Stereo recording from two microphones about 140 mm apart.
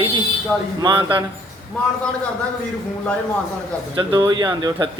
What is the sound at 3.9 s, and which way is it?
Speech, 30° right (ahead or behind).